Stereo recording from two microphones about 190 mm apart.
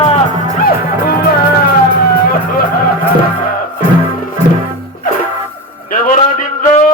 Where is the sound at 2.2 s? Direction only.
50° left (ahead or behind).